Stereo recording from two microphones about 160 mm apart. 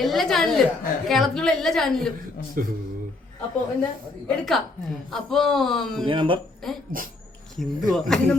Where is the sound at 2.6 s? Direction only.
60° right (ahead or behind).